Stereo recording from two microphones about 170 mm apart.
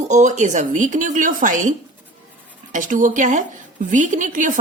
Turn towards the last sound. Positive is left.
turn(degrees=-50)  # may be behind; listen again after turning